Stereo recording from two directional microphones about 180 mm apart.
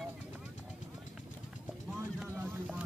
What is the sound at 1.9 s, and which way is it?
Vehicle, 10° right (ahead or behind).